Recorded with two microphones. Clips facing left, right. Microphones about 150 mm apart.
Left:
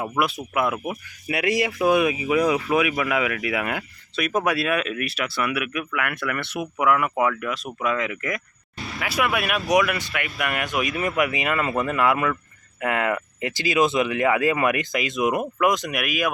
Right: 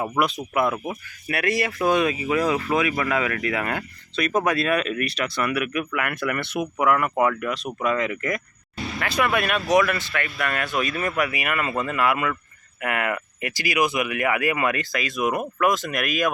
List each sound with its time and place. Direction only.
0.2 s speech: 5° left (ahead or behind)
1.3 s speech: 15° left (ahead or behind)